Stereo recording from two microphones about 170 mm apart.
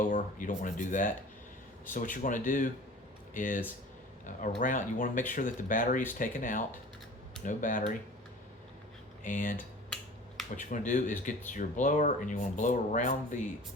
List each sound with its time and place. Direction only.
0.0 s speech: 50° left (ahead or behind)
9.2 s speech: 50° left (ahead or behind)
10.6 s speech: 50° left (ahead or behind)